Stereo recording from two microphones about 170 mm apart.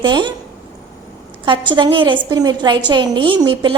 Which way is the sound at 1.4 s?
30° right (ahead or behind).